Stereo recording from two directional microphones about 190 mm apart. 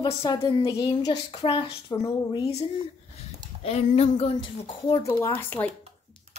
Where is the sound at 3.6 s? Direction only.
30° left (ahead or behind); by 5.7 s 10° left (ahead or behind).